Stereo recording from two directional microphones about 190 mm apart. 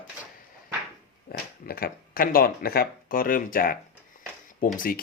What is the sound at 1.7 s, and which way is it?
Speech, 50° left (ahead or behind).